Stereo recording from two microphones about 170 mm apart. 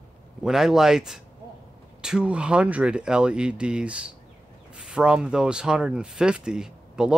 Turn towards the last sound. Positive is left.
turn(degrees=-5)  # may be behind; listen again after turning